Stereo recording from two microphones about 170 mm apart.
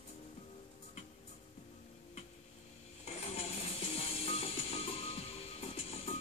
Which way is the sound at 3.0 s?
40° left (ahead or behind).